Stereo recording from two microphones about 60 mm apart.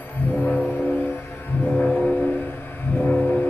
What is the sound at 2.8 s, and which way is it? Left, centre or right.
Train, left.